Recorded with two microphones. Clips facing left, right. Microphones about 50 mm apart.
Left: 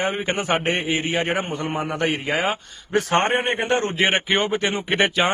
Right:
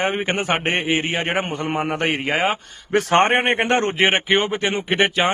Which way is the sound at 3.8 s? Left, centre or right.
Right.